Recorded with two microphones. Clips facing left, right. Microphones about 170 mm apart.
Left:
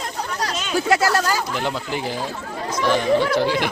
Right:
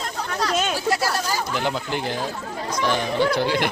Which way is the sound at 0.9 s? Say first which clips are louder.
Left 4 dB; 80° left.